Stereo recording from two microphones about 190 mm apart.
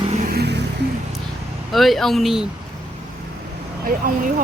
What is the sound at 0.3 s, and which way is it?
Music, 60° right (ahead or behind).